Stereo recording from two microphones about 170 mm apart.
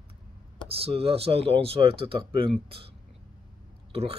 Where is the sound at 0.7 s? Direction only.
35° right (ahead or behind).